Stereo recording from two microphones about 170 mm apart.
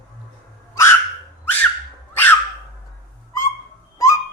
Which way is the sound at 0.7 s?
15° left (ahead or behind).